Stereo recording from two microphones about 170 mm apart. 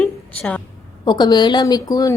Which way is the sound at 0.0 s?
5° left (ahead or behind).